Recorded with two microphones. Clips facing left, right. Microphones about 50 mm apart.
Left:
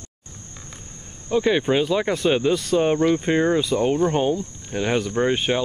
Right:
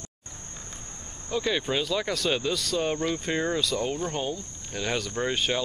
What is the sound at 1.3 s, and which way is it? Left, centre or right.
Speech, left.